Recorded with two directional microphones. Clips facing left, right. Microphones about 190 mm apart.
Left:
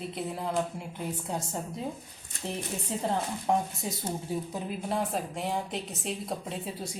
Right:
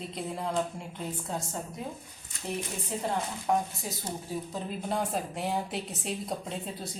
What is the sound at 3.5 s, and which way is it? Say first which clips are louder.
Speech: left 1 dB; 25° left (ahead or behind).